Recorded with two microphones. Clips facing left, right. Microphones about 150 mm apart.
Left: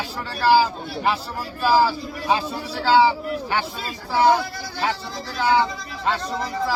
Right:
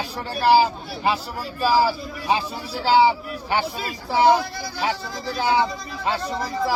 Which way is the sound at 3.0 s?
20° right (ahead or behind).